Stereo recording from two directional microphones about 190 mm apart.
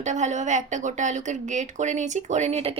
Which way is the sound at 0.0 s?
40° right (ahead or behind).